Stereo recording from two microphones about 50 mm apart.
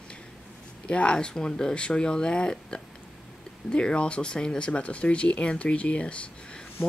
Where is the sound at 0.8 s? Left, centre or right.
Left.